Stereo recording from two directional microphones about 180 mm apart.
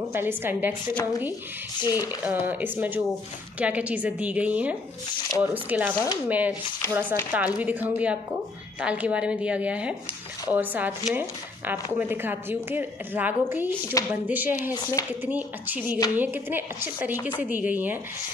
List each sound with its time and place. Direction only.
0.1 s speech: 10° right (ahead or behind)
1.8 s speech: 20° left (ahead or behind)
2.0 s speech: 10° right (ahead or behind)
14.7 s speech: 20° left (ahead or behind)
15.2 s speech: 10° right (ahead or behind)